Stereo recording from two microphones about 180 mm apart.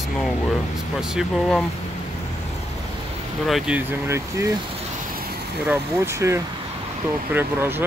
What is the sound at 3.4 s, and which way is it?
Speech, 5° right (ahead or behind).